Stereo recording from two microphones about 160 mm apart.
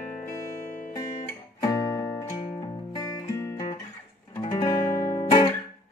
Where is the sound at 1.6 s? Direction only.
20° left (ahead or behind).